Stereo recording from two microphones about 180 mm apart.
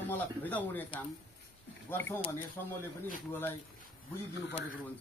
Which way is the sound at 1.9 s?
10° left (ahead or behind).